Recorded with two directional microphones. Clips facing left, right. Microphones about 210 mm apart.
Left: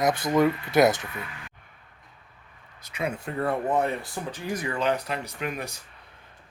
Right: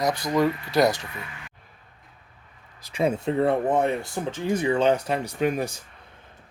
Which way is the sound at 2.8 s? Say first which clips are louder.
Right 7 dB; 30° right (ahead or behind).